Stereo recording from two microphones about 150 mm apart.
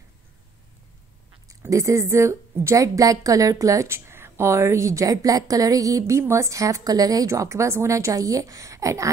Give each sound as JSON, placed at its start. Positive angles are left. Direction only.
{"t": 1.5, "sound": "a woman's voice", "side_deg": -20}